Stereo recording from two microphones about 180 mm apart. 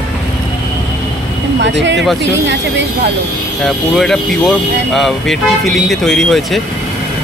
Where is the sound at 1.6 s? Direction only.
90° right.